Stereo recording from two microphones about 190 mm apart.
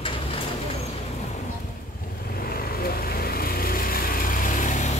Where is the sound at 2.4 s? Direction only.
50° left (ahead or behind).